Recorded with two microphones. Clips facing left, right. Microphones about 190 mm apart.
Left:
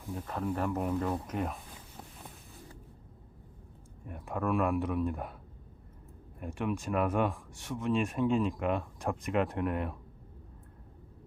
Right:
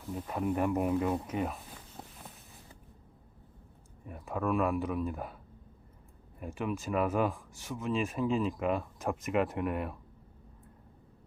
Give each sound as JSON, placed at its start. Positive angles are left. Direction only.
{"t": 0.1, "sound": "speech", "side_deg": -10}
{"t": 2.0, "sound": "a sound", "side_deg": -20}
{"t": 4.0, "sound": "speech", "side_deg": 0}
{"t": 6.4, "sound": "speech", "side_deg": 0}